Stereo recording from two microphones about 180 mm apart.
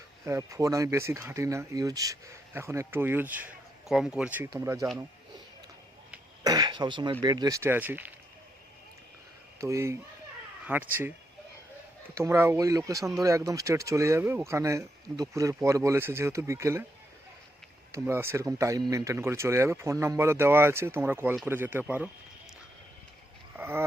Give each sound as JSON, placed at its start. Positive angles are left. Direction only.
{"t": 0.3, "sound": "speech", "side_deg": -15}
{"t": 6.4, "sound": "speech", "side_deg": -20}
{"t": 9.6, "sound": "speech", "side_deg": -15}
{"t": 12.1, "sound": "speech", "side_deg": -15}
{"t": 17.9, "sound": "speech", "side_deg": -15}
{"t": 23.6, "sound": "a sound", "side_deg": -10}